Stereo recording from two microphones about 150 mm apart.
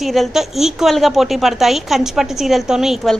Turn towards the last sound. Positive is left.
turn(degrees=0)  # may be behind; listen again after turning